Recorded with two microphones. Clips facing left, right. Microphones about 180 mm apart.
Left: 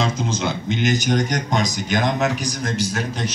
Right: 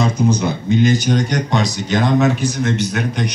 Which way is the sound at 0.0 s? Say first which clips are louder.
Right 6 dB; 90° left.